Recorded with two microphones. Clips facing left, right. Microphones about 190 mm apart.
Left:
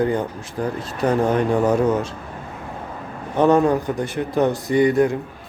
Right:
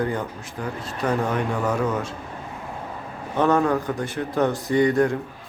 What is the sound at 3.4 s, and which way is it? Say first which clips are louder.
Speech: left 4 dB; 15° left (ahead or behind).